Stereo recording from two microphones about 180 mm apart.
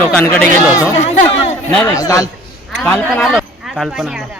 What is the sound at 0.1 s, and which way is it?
Speech, 5° left (ahead or behind).